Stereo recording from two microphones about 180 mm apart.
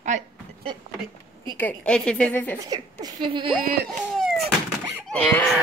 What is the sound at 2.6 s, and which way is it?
Speech, 20° right (ahead or behind).